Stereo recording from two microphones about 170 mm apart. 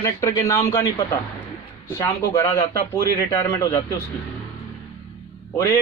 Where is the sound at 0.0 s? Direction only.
15° left (ahead or behind).